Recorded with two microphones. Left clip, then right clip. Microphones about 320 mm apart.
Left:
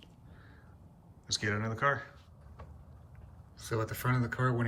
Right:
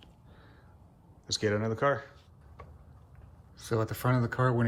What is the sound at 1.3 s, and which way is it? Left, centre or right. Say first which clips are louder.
Speech: right 4 dB; centre.